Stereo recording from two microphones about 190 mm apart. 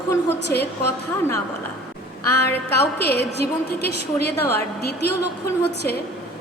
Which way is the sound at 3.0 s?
60° left (ahead or behind).